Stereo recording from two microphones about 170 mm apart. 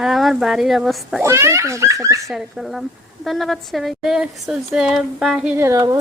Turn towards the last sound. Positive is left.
turn(degrees=-20)  # may be behind; listen again after turning